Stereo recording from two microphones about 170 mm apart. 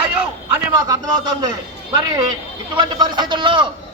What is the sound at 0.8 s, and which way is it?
A man's voice, 25° right (ahead or behind).